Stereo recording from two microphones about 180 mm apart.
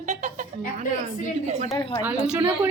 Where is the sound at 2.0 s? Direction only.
15° right (ahead or behind).